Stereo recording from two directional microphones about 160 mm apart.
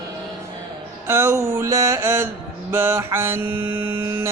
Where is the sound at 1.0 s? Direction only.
15° right (ahead or behind).